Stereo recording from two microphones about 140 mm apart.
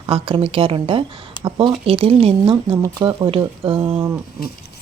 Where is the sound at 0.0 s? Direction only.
40° right (ahead or behind).